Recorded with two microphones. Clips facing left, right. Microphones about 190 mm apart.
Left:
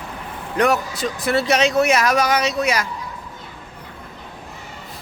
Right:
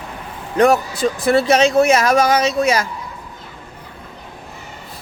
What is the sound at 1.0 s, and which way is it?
Speech, 30° right (ahead or behind).